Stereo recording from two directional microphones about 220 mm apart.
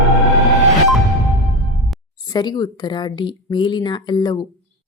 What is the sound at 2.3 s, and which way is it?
Speech, 20° left (ahead or behind).